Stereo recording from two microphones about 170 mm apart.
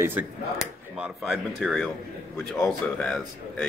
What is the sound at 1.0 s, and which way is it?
Speech, centre (ahead or behind).